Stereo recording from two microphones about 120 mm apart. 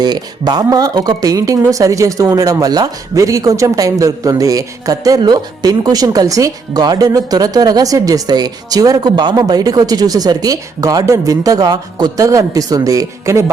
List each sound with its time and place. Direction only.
0.0 s speech: 35° right (ahead or behind)